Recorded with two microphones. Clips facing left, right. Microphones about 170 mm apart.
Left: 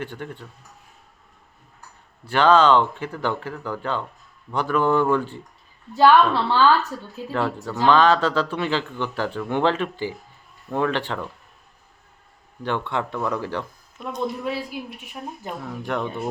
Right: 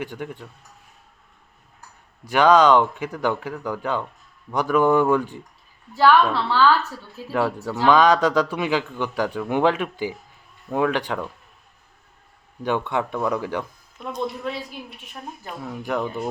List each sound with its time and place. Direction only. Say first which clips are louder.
0.0 s speech: right 1 dB; 10° right (ahead or behind)
2.2 s speech: right 1 dB; 15° right (ahead or behind)
5.9 s a woman's voice: left 1 dB; 15° left (ahead or behind)
7.3 s speech: right 2 dB; 10° right (ahead or behind)
12.6 s speech: right 2 dB; 15° right (ahead or behind)
14.4 s a woman's voice: left 2 dB; 10° left (ahead or behind)
15.4 s speech: left 4 dB; 20° left (ahead or behind)
15.8 s speech: right 2 dB; 5° right (ahead or behind)